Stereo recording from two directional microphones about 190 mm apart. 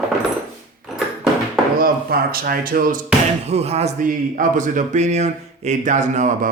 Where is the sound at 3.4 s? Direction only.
35° right (ahead or behind).